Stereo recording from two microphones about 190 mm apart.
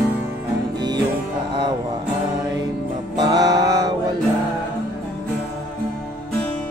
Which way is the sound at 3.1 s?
20° right (ahead or behind).